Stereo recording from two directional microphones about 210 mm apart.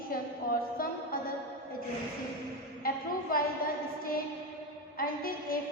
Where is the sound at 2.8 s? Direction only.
45° left (ahead or behind).